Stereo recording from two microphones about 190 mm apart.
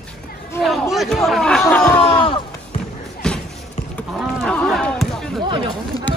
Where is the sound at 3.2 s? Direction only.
5° left (ahead or behind).